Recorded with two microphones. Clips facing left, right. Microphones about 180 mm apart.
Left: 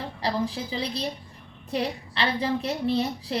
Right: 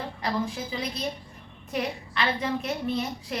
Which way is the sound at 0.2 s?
35° left (ahead or behind).